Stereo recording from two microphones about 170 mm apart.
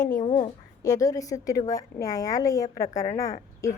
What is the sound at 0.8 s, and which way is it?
A woman's voice, 20° left (ahead or behind).